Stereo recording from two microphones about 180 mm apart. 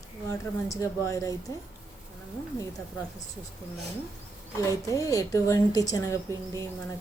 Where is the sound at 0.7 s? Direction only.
15° left (ahead or behind).